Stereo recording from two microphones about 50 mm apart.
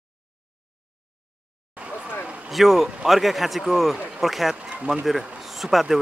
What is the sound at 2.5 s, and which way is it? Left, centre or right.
A man's voice, centre.